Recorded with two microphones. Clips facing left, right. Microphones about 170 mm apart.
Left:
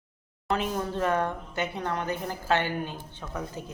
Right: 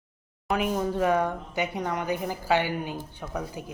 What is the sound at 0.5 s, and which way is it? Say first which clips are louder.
Speech: right 3 dB; 10° right (ahead or behind).